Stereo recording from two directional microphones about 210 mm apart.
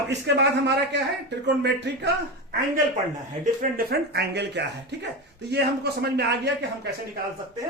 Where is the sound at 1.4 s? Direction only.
50° right (ahead or behind).